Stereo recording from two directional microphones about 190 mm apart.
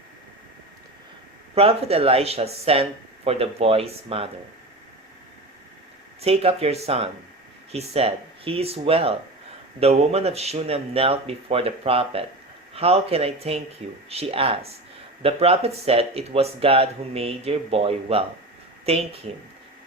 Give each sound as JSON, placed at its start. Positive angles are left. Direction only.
{"t": 1.5, "sound": "speech", "side_deg": -30}
{"t": 6.2, "sound": "speech", "side_deg": -30}